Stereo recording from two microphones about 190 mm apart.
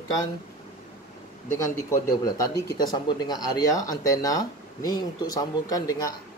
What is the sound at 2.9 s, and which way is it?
Speech, 25° left (ahead or behind).